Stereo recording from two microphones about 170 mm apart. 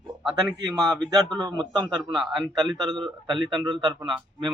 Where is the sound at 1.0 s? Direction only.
25° right (ahead or behind).